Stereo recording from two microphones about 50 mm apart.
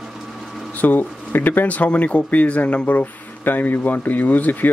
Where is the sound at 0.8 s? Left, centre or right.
Left.